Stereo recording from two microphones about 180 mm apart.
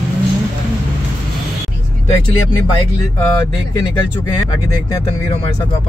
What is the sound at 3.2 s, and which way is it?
Speech, 15° left (ahead or behind).